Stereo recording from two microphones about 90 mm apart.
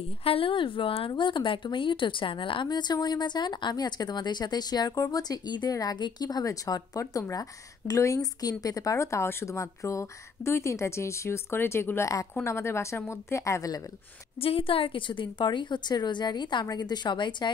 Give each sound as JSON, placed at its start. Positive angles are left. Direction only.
{"t": 0.2, "sound": "speech", "side_deg": 90}
{"t": 2.7, "sound": "speech", "side_deg": 50}
{"t": 14.4, "sound": "a woman's voice", "side_deg": 90}